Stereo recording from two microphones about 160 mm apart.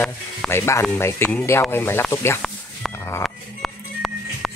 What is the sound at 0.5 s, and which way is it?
Speech, 15° left (ahead or behind).